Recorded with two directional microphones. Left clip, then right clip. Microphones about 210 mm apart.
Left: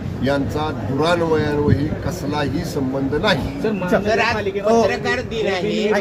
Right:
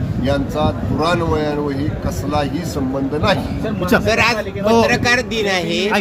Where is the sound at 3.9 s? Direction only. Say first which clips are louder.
Right 4 dB; 50° right (ahead or behind).